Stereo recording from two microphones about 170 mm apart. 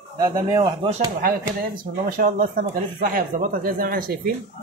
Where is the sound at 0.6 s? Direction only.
30° right (ahead or behind).